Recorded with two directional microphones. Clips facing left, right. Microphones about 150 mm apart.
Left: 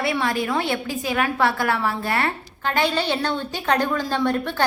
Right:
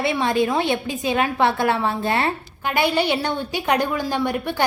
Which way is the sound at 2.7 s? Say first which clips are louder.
Right 2 dB; 10° right (ahead or behind).